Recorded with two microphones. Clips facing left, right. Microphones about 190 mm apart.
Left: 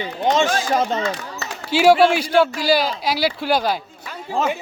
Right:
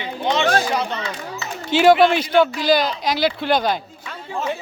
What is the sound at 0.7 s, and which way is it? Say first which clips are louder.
Speech: left 4 dB; 45° left (ahead or behind).